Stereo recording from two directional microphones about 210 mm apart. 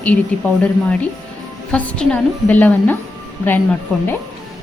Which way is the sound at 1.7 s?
5° left (ahead or behind).